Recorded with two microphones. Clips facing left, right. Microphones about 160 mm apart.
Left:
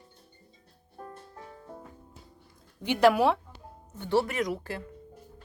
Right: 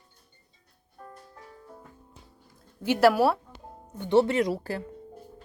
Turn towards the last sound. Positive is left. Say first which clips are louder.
# right 5 dB
turn(degrees=-35)  # may be behind; listen again after turning